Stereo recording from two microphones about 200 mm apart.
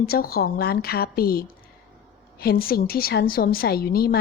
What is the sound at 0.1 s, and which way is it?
Speech, 50° left (ahead or behind).